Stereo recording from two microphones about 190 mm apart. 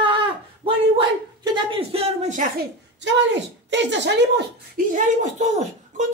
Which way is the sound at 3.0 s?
70° right (ahead or behind).